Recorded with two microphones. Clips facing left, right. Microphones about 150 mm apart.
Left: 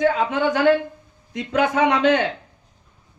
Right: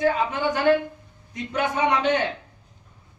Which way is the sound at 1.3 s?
90° left.